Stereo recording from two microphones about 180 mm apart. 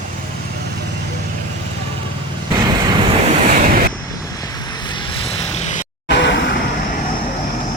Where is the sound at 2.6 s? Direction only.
25° right (ahead or behind).